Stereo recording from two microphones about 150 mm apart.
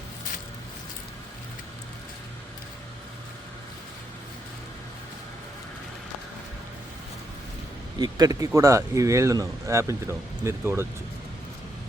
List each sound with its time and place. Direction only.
7.9 s speech: 25° right (ahead or behind)